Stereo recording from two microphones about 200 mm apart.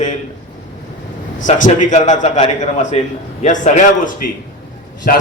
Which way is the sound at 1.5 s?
40° left (ahead or behind).